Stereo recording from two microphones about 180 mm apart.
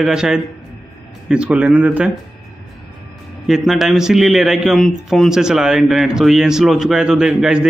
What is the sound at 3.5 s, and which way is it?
A man's voice, centre (ahead or behind).